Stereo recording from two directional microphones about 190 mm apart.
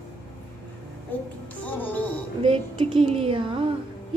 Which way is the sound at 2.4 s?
25° right (ahead or behind).